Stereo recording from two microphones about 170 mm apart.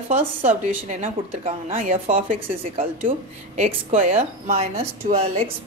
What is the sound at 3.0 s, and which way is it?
Speech, 40° right (ahead or behind).